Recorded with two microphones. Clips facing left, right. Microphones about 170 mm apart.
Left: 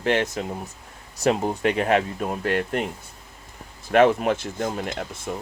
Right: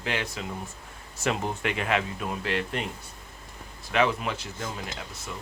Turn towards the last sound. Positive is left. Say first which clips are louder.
# left 8 dB
turn(degrees=50)  # may be behind; listen again after turning